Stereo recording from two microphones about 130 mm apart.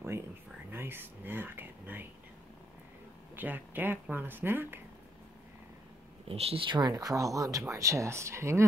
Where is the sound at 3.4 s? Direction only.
15° right (ahead or behind).